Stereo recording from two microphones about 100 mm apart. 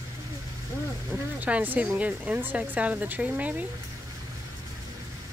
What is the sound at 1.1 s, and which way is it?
Speech, 15° right (ahead or behind).